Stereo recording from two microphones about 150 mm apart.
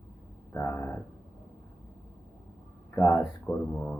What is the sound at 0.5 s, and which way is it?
Speech, 15° left (ahead or behind).